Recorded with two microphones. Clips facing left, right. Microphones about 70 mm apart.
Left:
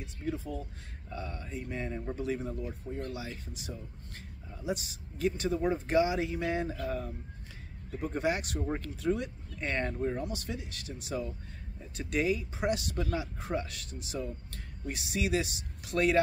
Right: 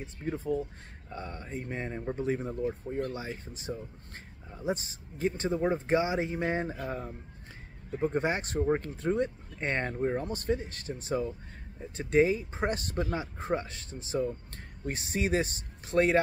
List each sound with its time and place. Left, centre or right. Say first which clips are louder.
0.0 s speech: right 2 dB; right